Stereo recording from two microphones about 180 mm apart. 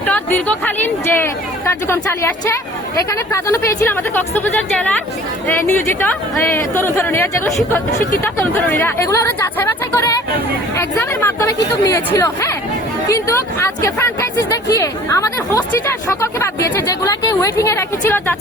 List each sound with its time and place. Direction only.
0.0 s speech: 5° left (ahead or behind)